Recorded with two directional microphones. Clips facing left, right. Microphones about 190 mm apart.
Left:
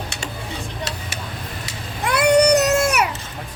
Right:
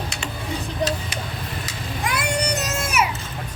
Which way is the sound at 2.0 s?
70° left (ahead or behind).